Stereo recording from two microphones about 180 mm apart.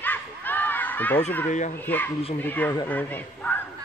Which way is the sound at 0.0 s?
10° left (ahead or behind).